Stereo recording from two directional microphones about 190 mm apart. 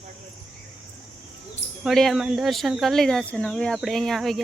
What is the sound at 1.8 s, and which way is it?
Speech, centre (ahead or behind).